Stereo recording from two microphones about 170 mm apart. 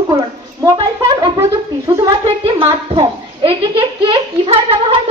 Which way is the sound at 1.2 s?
20° right (ahead or behind).